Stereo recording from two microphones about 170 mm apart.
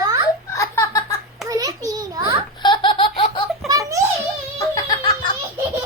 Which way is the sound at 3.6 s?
20° right (ahead or behind).